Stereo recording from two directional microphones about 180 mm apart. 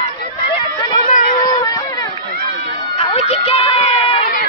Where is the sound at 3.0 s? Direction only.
30° left (ahead or behind).